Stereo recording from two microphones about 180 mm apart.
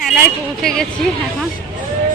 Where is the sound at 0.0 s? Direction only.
Centre (ahead or behind).